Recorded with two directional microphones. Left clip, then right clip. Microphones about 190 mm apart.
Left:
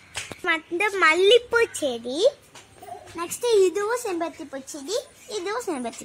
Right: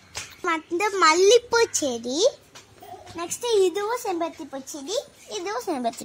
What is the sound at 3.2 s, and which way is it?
Speech, 40° right (ahead or behind).